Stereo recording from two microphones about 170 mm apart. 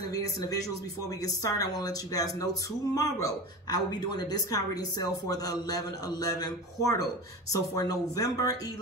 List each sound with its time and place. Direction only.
0.1 s speech: 20° left (ahead or behind)